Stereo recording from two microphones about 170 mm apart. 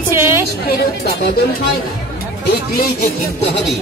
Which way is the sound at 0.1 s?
15° right (ahead or behind).